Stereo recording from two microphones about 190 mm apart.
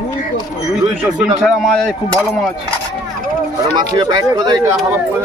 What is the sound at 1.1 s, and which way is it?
Speech, centre (ahead or behind).